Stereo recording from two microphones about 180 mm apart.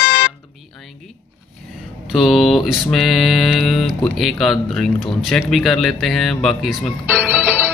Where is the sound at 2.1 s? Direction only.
Centre (ahead or behind).